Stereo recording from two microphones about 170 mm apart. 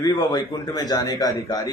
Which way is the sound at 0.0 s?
20° left (ahead or behind).